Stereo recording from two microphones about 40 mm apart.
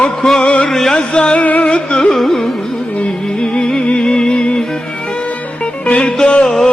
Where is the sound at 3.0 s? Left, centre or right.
Left.